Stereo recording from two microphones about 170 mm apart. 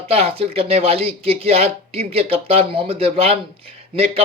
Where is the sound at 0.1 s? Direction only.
35° right (ahead or behind).